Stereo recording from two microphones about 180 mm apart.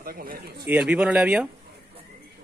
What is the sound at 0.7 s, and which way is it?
Speech, 5° right (ahead or behind).